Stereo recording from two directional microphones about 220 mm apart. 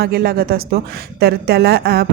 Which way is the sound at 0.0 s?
45° right (ahead or behind).